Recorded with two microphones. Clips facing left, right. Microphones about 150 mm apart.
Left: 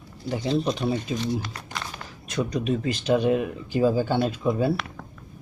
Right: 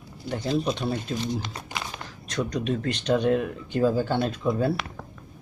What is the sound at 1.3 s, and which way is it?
Speech, 20° right (ahead or behind).